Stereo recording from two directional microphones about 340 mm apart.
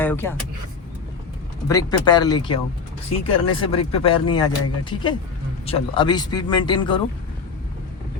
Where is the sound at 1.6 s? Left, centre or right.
Centre.